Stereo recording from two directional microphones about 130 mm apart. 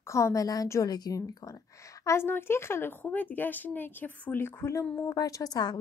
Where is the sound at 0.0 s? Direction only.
25° left (ahead or behind).